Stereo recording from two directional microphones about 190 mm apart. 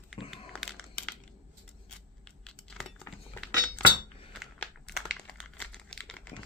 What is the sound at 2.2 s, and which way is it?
Keys jangling, 5° left (ahead or behind).